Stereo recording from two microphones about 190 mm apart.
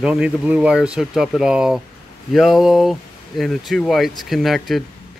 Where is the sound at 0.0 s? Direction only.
5° right (ahead or behind).